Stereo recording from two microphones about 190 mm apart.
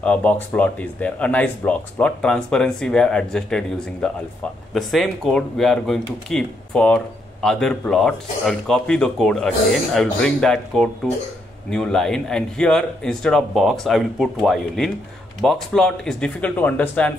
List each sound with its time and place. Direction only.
0.0 s speech: 5° left (ahead or behind)